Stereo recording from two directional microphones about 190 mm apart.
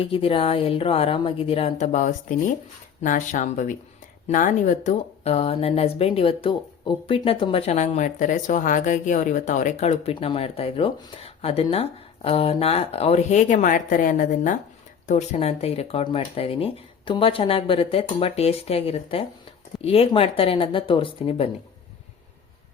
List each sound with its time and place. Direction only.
0.0 s speech: 30° left (ahead or behind)